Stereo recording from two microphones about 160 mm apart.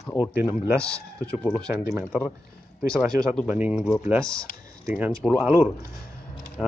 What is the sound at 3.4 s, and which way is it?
Speech, 10° right (ahead or behind).